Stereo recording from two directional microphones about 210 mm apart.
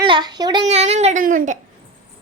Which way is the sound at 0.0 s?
20° right (ahead or behind).